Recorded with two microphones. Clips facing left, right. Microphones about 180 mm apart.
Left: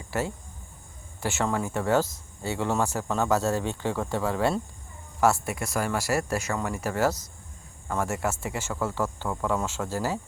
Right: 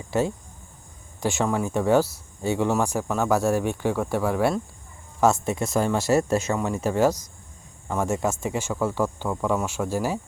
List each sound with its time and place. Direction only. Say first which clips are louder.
0.1 s speech: right 6 dB; 15° right (ahead or behind)